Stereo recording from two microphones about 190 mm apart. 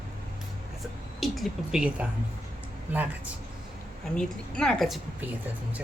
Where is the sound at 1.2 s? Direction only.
Centre (ahead or behind).